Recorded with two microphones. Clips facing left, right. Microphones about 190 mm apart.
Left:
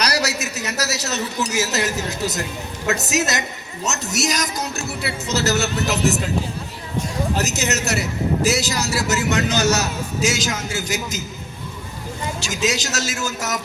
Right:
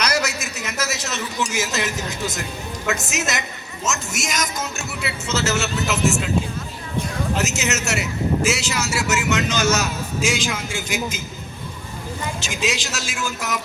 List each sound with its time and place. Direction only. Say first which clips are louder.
0.0 s a sound: left 1 dB; 35° left (ahead or behind)
0.5 s a man's voice: left 2 dB; 40° left (ahead or behind)
7.3 s a man's voice: left 1 dB; 35° left (ahead or behind)
12.5 s a man's voice: left 4 dB; 40° left (ahead or behind)